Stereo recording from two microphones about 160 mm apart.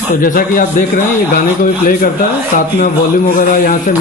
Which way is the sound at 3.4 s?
65° left (ahead or behind).